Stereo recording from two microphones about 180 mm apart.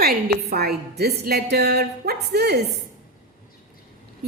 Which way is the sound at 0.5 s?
60° right (ahead or behind).